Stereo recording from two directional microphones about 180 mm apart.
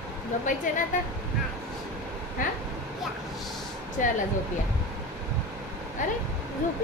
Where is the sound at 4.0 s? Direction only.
45° left (ahead or behind).